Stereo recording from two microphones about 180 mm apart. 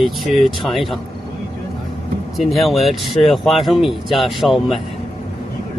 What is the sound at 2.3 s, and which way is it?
Speech, centre (ahead or behind).